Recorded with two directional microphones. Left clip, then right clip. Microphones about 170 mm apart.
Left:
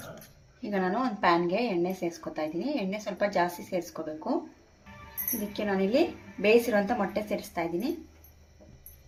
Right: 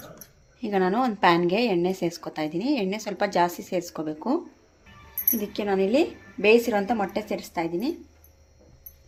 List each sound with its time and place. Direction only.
0.6 s a woman's voice: 50° right (ahead or behind)
5.5 s a woman's voice: 40° right (ahead or behind)